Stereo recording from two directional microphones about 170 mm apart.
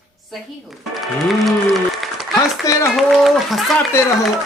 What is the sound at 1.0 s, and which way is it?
Speech, centre (ahead or behind).